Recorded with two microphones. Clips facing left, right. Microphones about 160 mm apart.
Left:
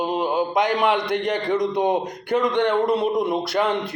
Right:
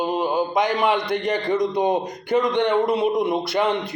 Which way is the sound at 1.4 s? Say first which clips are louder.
Right 1 dB; 10° left (ahead or behind).